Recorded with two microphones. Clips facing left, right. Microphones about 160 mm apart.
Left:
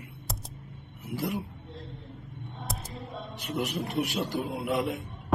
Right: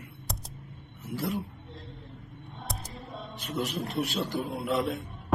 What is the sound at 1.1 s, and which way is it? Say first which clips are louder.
Speech: even; 20° left (ahead or behind).